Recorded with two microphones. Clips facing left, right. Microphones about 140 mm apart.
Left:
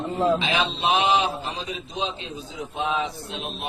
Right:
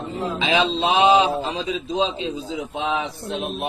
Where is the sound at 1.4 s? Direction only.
90° right.